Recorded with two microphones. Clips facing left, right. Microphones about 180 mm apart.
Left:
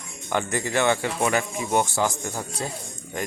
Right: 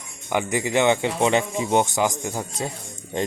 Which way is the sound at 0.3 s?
15° right (ahead or behind).